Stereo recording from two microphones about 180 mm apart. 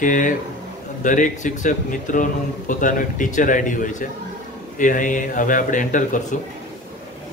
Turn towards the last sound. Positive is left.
turn(degrees=45)  # may be behind; listen again after turning